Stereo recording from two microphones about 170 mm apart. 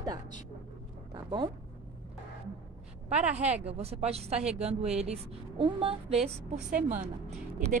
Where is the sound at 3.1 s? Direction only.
40° right (ahead or behind).